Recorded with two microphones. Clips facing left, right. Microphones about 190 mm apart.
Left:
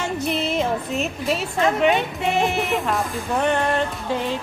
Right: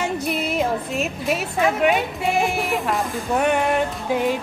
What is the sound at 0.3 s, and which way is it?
Music, 5° right (ahead or behind).